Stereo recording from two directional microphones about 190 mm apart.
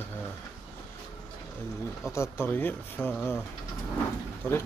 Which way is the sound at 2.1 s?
15° left (ahead or behind).